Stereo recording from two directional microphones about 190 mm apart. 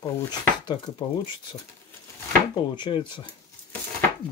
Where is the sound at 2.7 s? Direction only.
25° left (ahead or behind).